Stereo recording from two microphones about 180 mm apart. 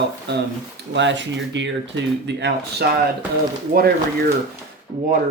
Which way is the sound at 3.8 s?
55° right (ahead or behind).